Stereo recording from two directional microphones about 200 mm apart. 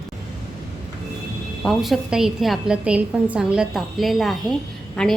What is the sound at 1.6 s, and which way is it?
A woman's voice, centre (ahead or behind).